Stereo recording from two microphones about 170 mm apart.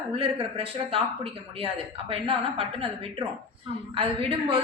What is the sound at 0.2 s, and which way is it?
Speech, 30° right (ahead or behind).